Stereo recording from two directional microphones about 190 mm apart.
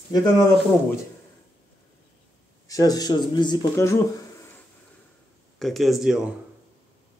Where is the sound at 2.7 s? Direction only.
20° left (ahead or behind).